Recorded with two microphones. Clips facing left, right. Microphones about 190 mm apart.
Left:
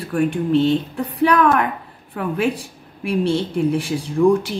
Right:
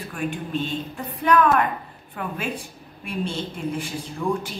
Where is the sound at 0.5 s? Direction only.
80° left.